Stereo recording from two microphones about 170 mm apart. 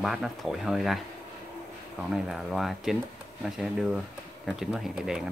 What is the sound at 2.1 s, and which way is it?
Speech, 5° right (ahead or behind).